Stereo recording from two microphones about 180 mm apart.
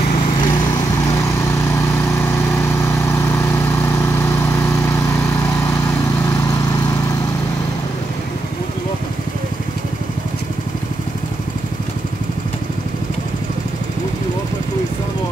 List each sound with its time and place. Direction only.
0.4 s lawn mower: 20° left (ahead or behind)